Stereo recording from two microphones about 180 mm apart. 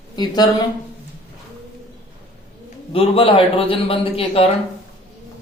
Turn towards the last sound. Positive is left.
turn(degrees=30)  # may be behind; listen again after turning